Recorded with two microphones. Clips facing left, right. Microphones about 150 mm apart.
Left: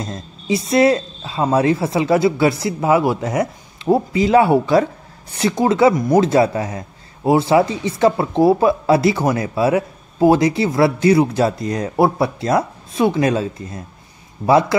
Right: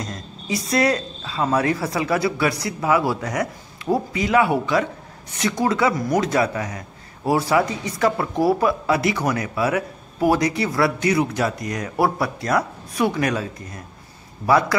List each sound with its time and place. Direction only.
0.0 s speech: 25° left (ahead or behind)